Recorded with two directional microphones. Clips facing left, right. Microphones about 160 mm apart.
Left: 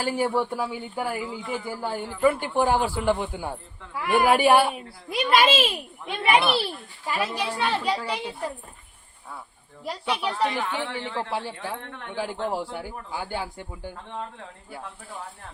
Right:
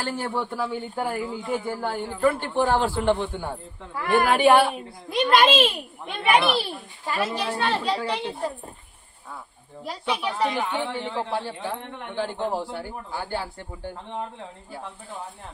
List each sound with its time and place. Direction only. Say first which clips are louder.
0.0 s a man's voice: left 4 dB; 10° left (ahead or behind)
9.8 s speech: even; 10° right (ahead or behind)
11.3 s a man's voice: right 2 dB; 10° left (ahead or behind)
11.5 s speech: right 2 dB; 15° right (ahead or behind)
12.1 s a man's voice: right 1 dB; 10° left (ahead or behind)
13.9 s speech: right 2 dB; 20° right (ahead or behind)